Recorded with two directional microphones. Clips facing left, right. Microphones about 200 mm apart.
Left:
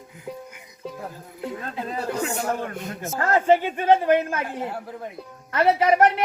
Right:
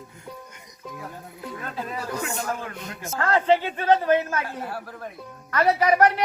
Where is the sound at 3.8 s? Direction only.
15° left (ahead or behind).